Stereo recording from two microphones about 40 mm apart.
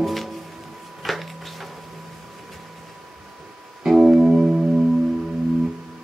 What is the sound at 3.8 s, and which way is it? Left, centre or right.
Music, centre.